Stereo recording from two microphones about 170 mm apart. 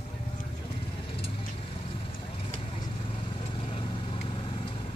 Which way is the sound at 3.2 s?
30° left (ahead or behind).